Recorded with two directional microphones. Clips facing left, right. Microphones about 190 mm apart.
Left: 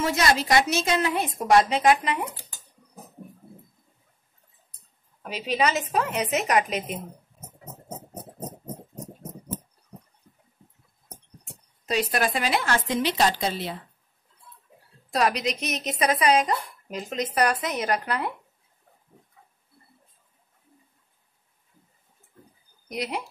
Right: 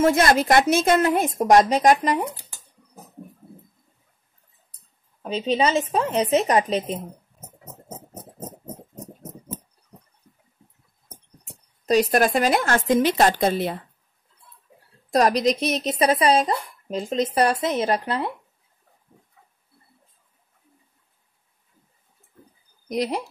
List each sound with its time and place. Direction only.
0.0 s a woman's voice: 50° right (ahead or behind)
5.2 s speech: 30° right (ahead or behind)
8.9 s a sound: centre (ahead or behind)
11.8 s a woman's voice: 40° right (ahead or behind)
15.0 s speech: 40° right (ahead or behind); by 18.3 s 25° right (ahead or behind)
22.8 s speech: 40° right (ahead or behind)